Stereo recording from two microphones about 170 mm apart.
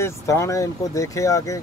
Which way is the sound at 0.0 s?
20° left (ahead or behind).